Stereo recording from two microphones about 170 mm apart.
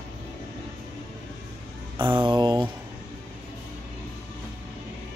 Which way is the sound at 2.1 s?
30° right (ahead or behind).